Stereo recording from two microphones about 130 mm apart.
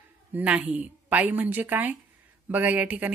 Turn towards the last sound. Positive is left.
turn(degrees=-10)  # may be behind; listen again after turning